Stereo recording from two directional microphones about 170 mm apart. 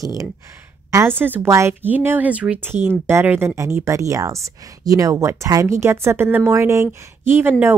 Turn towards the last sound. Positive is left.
turn(degrees=-10)  # may be behind; listen again after turning